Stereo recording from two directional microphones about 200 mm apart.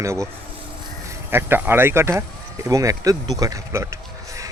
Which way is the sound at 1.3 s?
10° right (ahead or behind).